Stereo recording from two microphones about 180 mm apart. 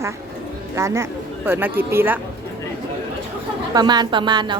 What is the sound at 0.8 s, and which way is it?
A woman's voice, 15° right (ahead or behind).